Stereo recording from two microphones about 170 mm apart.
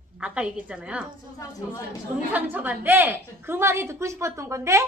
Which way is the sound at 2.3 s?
10° right (ahead or behind).